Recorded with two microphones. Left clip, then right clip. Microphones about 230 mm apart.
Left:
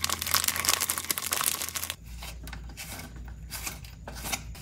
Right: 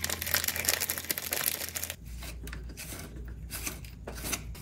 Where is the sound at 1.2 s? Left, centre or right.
Centre.